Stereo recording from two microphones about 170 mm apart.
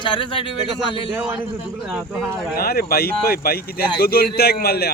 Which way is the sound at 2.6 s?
65° left (ahead or behind).